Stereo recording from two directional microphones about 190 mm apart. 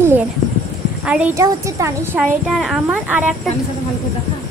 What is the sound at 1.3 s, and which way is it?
Speech, 15° right (ahead or behind).